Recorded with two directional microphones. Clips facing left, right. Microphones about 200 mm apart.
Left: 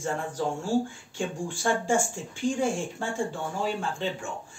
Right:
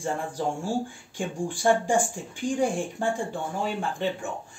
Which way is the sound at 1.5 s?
15° right (ahead or behind).